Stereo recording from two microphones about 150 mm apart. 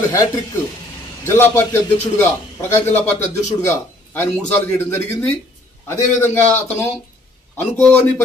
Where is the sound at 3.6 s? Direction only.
20° left (ahead or behind).